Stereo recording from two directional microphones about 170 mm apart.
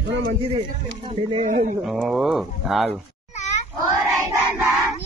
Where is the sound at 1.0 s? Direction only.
35° right (ahead or behind).